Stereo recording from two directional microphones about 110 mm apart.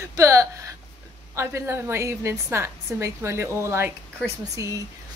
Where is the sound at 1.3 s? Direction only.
25° right (ahead or behind).